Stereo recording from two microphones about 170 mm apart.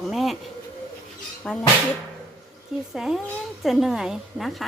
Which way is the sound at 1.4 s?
10° left (ahead or behind).